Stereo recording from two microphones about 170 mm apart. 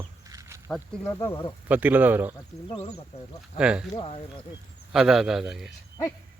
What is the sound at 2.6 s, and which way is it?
Speech, 35° left (ahead or behind).